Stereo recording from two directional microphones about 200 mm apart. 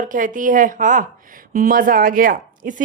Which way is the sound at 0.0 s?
40° right (ahead or behind).